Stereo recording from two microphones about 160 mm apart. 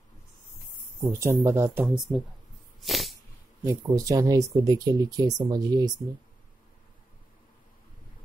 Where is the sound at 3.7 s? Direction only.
20° right (ahead or behind).